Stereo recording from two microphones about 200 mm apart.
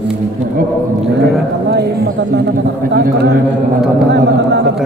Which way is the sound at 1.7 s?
55° right (ahead or behind).